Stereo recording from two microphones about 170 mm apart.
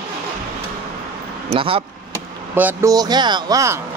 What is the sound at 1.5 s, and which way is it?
Speech, 35° right (ahead or behind).